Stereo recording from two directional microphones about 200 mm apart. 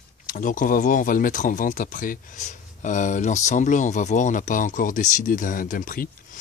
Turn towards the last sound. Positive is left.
turn(degrees=45)  # may be behind; listen again after turning